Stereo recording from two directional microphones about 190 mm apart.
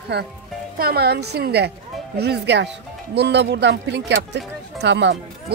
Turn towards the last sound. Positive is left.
turn(degrees=-65)  # may be behind; listen again after turning